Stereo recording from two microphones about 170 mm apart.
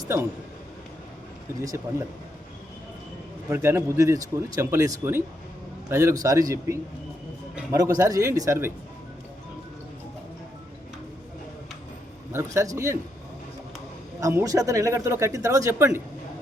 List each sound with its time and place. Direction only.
1.6 s speech: 20° right (ahead or behind)
3.5 s speech: 15° right (ahead or behind)
12.3 s speech: 15° right (ahead or behind)
14.2 s speech: 20° right (ahead or behind)